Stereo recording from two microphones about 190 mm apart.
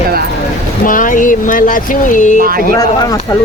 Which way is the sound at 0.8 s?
45° left (ahead or behind).